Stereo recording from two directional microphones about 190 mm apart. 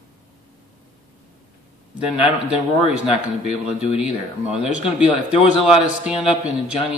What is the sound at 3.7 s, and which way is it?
Speech, 5° right (ahead or behind).